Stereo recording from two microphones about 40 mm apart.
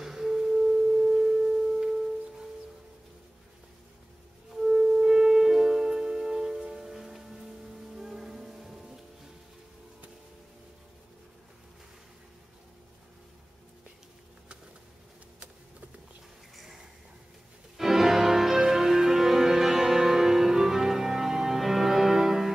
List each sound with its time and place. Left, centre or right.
0.0 s tuning fork: centre
4.6 s music: centre
17.7 s music: centre